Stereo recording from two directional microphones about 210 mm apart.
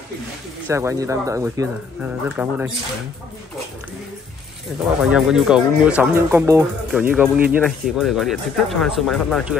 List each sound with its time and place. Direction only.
0.7 s speech: 15° right (ahead or behind)
5.0 s speech: centre (ahead or behind)